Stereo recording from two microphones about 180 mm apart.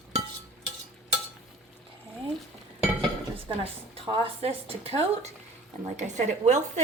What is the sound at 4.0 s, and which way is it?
A woman's voice, 30° right (ahead or behind).